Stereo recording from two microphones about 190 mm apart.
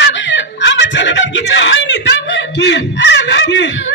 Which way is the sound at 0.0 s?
70° left (ahead or behind).